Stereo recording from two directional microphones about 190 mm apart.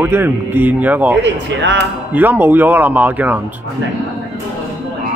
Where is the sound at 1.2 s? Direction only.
70° right (ahead or behind).